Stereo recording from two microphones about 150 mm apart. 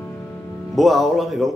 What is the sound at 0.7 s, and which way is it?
Music, centre (ahead or behind).